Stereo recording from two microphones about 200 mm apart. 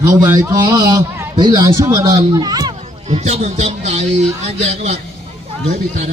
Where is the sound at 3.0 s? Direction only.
35° right (ahead or behind).